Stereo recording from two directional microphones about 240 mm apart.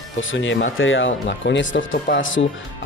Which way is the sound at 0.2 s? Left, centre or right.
Left.